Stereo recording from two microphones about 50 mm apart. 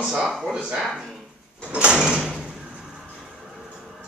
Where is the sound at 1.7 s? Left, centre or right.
Right.